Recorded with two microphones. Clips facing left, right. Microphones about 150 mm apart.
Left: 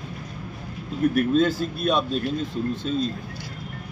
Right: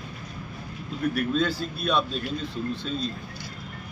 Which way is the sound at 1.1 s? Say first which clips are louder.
Left 5 dB; 45° left (ahead or behind).